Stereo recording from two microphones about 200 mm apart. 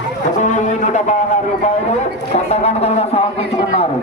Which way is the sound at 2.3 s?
30° left (ahead or behind).